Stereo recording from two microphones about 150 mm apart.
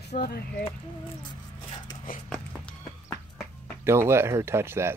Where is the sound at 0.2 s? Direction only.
90° left.